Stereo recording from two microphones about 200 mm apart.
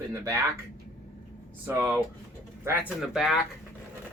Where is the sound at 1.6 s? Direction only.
10° right (ahead or behind).